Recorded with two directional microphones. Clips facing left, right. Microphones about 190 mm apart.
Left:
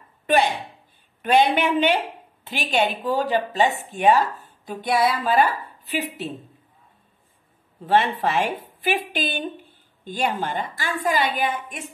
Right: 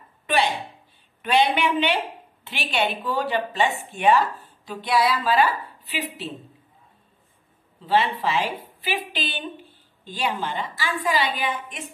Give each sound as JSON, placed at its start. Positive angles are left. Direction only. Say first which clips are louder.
{"t": 1.2, "sound": "speech", "louder": "left 2 dB", "side_deg": 45}
{"t": 7.8, "sound": "speech", "louder": "left 2 dB", "side_deg": 50}